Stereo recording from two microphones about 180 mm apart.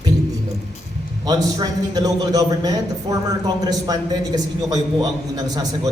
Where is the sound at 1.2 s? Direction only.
20° right (ahead or behind).